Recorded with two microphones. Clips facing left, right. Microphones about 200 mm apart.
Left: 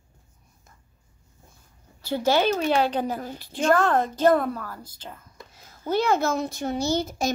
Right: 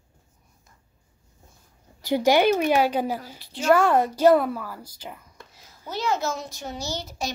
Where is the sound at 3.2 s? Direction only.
50° left (ahead or behind).